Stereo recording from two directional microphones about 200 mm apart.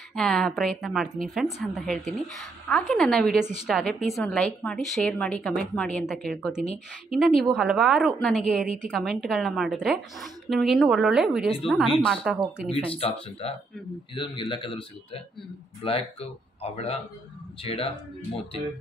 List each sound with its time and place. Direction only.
0.1 s a woman's voice: 5° left (ahead or behind)
12.9 s speech: 30° left (ahead or behind)